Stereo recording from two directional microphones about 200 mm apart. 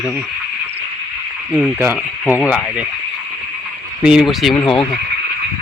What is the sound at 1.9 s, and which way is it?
Cricket, 15° left (ahead or behind).